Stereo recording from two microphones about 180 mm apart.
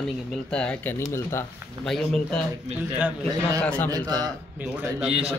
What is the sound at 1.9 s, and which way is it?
Speech, 5° left (ahead or behind).